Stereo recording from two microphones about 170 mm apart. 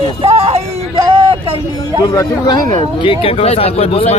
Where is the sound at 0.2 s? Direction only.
35° right (ahead or behind).